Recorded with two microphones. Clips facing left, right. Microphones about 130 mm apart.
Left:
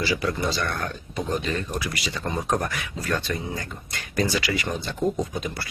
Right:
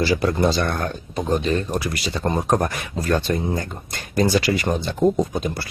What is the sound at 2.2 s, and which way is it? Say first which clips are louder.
Speech: right 6 dB; 45° right (ahead or behind).